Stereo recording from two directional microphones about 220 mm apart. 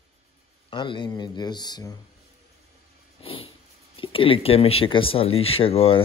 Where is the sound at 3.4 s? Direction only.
25° left (ahead or behind).